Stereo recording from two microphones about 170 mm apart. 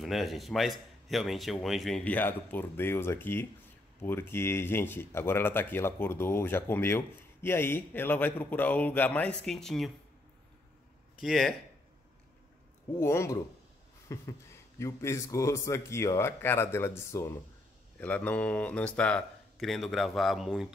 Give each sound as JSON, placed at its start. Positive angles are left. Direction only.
{"t": 0.0, "sound": "a man's voice", "side_deg": 0}
{"t": 11.1, "sound": "speech", "side_deg": 0}
{"t": 12.9, "sound": "a man's voice", "side_deg": 15}